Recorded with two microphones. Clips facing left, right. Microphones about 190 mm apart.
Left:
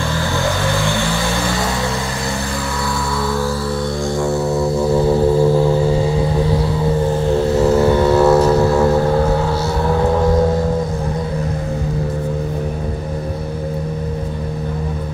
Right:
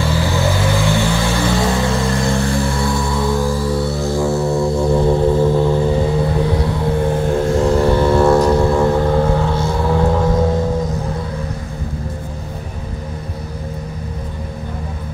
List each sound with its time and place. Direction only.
2.8 s music: 15° right (ahead or behind)
4.0 s music: centre (ahead or behind)
7.4 s vehicle: 5° left (ahead or behind)